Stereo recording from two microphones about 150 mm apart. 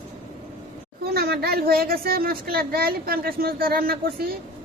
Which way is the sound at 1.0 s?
90° right.